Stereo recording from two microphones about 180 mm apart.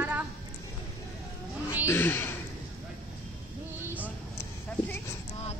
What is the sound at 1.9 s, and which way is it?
Speech, 10° left (ahead or behind).